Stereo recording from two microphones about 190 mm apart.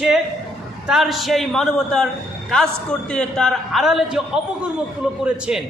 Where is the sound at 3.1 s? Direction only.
5° left (ahead or behind).